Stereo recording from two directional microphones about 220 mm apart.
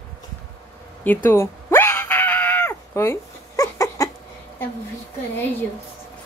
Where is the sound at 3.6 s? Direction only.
15° left (ahead or behind).